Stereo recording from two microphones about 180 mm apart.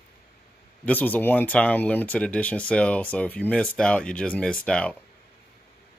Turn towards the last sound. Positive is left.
turn(degrees=5)  # may be behind; listen again after turning